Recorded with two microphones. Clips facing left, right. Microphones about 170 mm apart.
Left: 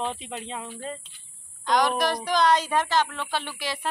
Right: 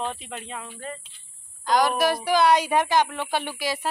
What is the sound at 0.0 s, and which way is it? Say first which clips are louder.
Speech: even; 20° left (ahead or behind).